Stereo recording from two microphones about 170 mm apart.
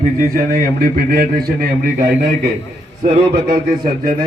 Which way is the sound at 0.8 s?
60° right (ahead or behind).